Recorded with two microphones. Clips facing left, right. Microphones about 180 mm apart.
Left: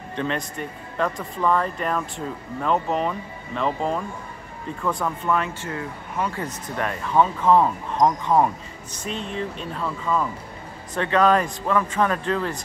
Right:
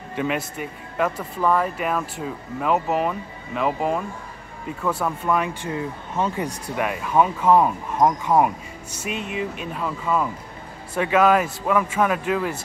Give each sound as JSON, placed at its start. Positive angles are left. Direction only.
{"t": 0.1, "sound": "speech", "side_deg": -10}
{"t": 6.4, "sound": "speech", "side_deg": -10}